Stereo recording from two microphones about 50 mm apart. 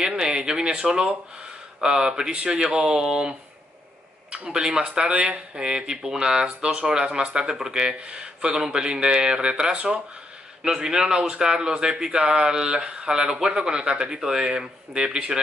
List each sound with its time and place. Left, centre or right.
0.0 s speech: centre